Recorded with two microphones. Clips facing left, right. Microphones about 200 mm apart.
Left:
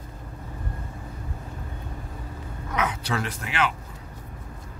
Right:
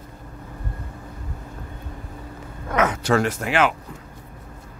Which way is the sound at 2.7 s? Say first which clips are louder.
Right 8 dB; 45° right (ahead or behind).